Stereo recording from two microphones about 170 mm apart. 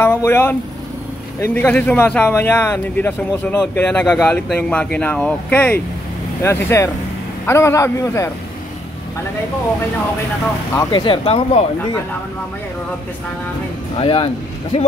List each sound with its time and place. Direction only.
0.0 s speech: 15° left (ahead or behind)
10.9 s speech: 30° left (ahead or behind)
13.9 s speech: 35° left (ahead or behind)